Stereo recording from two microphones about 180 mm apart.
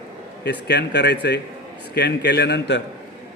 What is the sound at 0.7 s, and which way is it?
A man's voice, 70° left (ahead or behind).